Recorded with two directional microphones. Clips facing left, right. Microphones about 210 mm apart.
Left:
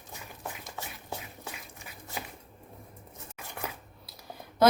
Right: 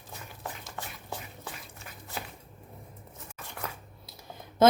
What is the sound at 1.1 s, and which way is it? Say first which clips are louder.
Dog: even; 15° left (ahead or behind).